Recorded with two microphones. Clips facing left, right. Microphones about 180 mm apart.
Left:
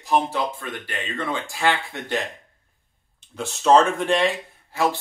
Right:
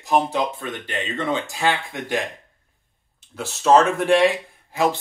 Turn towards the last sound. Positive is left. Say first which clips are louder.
# right 2 dB
turn(degrees=-15)  # may be behind; listen again after turning